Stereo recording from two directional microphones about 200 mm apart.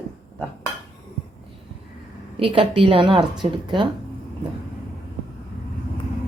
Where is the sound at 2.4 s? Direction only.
25° right (ahead or behind).